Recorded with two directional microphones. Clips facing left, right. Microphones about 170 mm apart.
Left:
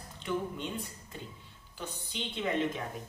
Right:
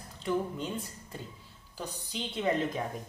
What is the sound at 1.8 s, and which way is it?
Speech, 35° right (ahead or behind).